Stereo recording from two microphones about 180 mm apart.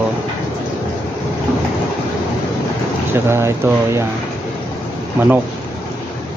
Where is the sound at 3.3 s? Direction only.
15° right (ahead or behind).